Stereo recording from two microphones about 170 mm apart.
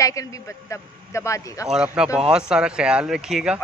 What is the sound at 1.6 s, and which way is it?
Speech, 5° right (ahead or behind).